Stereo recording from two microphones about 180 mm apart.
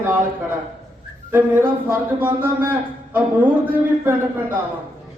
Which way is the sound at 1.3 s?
10° right (ahead or behind).